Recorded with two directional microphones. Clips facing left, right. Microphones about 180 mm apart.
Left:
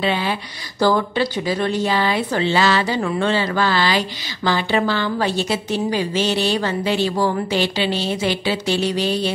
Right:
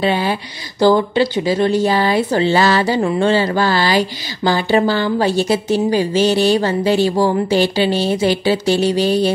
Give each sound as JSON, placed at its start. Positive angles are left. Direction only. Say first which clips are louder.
{"t": 0.0, "sound": "speech", "louder": "right 4 dB", "side_deg": -40}
{"t": 1.9, "sound": "speech", "louder": "right 4 dB", "side_deg": -40}